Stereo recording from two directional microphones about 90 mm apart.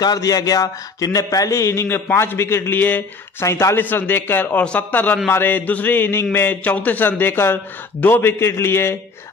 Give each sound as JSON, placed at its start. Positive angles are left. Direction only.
{"t": 0.0, "sound": "a man's voice", "side_deg": 45}